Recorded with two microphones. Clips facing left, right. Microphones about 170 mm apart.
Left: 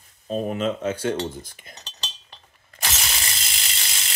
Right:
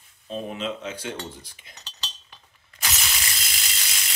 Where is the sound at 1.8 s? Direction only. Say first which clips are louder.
Right 1 dB; 35° left (ahead or behind).